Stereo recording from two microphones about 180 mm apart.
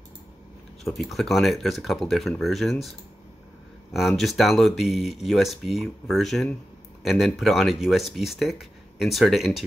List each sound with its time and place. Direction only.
0.9 s speech: centre (ahead or behind)
4.2 s speech: centre (ahead or behind)